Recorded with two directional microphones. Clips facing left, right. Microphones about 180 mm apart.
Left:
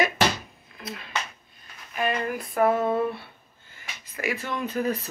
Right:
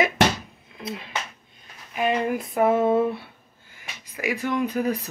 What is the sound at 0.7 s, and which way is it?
Finger snapping, 25° right (ahead or behind).